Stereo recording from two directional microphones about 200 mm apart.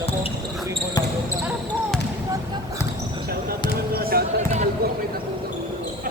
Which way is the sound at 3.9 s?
50° right (ahead or behind).